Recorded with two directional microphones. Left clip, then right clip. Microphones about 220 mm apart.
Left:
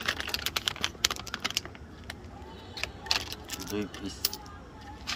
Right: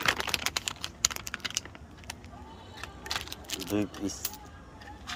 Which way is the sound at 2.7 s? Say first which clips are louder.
Left 5 dB; 45° left (ahead or behind).